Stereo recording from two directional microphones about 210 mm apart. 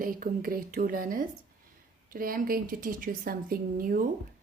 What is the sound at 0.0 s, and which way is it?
A woman's voice, 40° right (ahead or behind).